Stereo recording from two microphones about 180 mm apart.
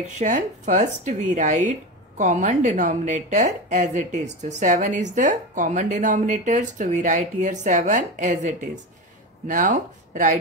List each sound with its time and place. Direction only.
0.1 s a woman's voice: 45° right (ahead or behind)